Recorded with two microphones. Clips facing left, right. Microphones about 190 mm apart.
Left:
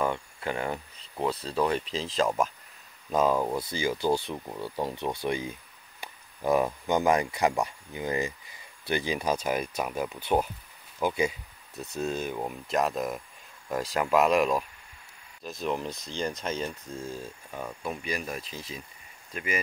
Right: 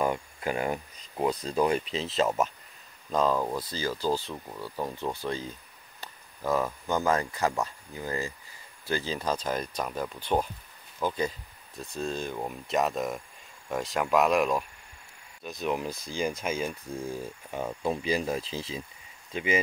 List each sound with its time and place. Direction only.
0.0 s speech: 10° right (ahead or behind)
3.1 s speech: 10° left (ahead or behind); by 18.9 s 30° right (ahead or behind)